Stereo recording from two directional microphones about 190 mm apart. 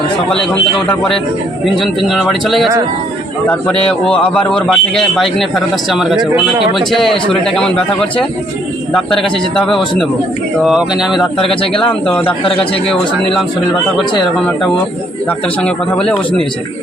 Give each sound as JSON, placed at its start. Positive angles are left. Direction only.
{"t": 0.9, "sound": "a man's voice", "side_deg": 0}
{"t": 9.1, "sound": "a man's voice", "side_deg": 0}
{"t": 11.6, "sound": "speech", "side_deg": 30}
{"t": 11.9, "sound": "a man's voice", "side_deg": 10}
{"t": 15.3, "sound": "a man's voice", "side_deg": 5}